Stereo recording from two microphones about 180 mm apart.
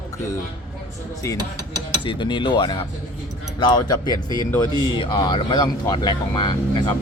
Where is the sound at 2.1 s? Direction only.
25° left (ahead or behind).